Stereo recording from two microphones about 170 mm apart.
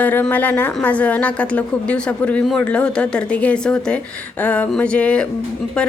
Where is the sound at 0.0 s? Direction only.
10° left (ahead or behind).